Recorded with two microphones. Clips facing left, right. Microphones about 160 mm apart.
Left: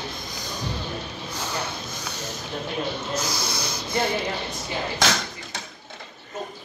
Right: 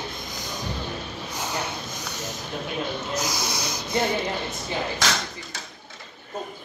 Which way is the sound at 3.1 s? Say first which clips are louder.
Even; 15° right (ahead or behind).